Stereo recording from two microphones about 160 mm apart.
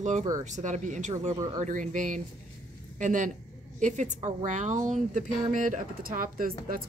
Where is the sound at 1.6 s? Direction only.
50° right (ahead or behind).